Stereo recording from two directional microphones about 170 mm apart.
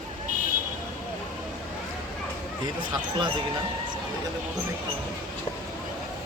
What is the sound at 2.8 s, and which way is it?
Speech, 30° right (ahead or behind).